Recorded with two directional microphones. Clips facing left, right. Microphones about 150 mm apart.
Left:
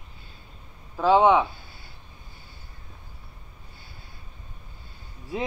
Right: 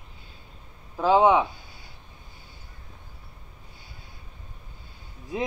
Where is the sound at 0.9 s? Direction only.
10° right (ahead or behind).